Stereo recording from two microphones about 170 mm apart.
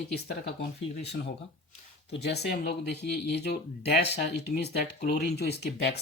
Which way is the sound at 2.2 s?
75° left (ahead or behind).